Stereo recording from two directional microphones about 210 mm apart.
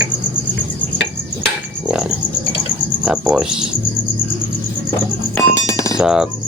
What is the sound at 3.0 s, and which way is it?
Speech, 5° right (ahead or behind).